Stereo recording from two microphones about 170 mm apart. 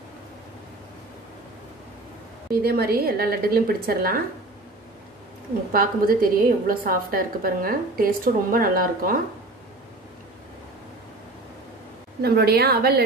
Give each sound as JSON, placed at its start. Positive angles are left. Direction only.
{"t": 2.5, "sound": "a woman's voice", "side_deg": -65}
{"t": 5.7, "sound": "a woman's voice", "side_deg": -60}
{"t": 12.2, "sound": "a woman's voice", "side_deg": -65}